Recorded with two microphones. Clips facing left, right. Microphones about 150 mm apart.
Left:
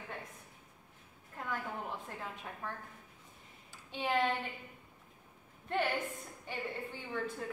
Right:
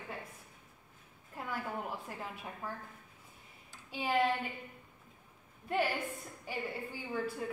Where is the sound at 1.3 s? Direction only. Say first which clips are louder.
Right 1 dB; 10° right (ahead or behind).